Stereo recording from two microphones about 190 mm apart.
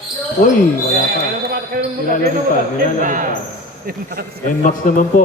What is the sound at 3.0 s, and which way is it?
Speech, 40° right (ahead or behind).